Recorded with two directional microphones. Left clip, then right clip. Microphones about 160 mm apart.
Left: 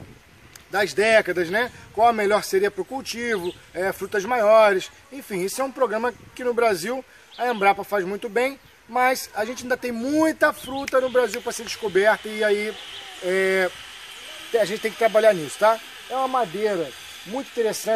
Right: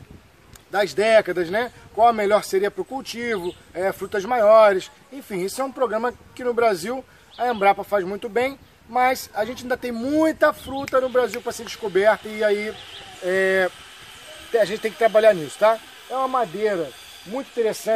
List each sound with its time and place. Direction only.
0.7 s speech: 10° right (ahead or behind)